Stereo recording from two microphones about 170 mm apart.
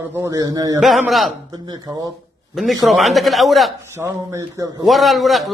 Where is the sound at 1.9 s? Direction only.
25° right (ahead or behind).